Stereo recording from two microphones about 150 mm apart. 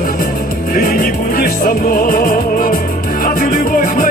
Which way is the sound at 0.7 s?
70° left (ahead or behind).